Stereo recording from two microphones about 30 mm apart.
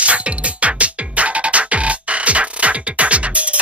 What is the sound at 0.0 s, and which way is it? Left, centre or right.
Music, right.